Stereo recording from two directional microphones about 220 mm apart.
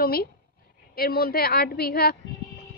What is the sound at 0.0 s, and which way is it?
A woman's voice, 45° left (ahead or behind).